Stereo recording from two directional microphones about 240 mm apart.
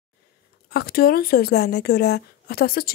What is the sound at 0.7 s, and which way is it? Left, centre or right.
Speech, left.